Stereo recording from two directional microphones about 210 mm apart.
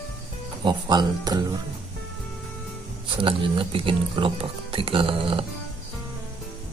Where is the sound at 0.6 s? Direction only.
20° right (ahead or behind).